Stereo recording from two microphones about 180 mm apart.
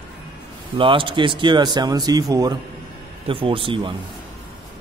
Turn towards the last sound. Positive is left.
turn(degrees=-25)  # may be behind; listen again after turning